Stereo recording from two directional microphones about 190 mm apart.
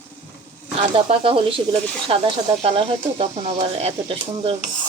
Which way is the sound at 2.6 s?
30° right (ahead or behind).